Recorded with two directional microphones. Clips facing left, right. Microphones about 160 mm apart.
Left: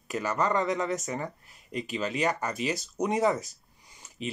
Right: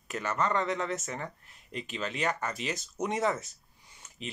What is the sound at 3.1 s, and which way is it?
Speech, 35° left (ahead or behind).